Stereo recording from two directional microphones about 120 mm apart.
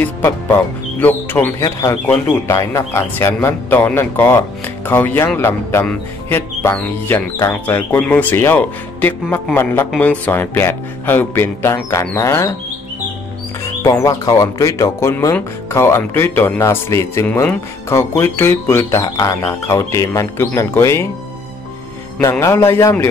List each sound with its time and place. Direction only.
0.0 s speech: 15° left (ahead or behind)
1.6 s speech: 30° left (ahead or behind)
13.8 s speech: 30° left (ahead or behind)
22.4 s speech: 20° left (ahead or behind)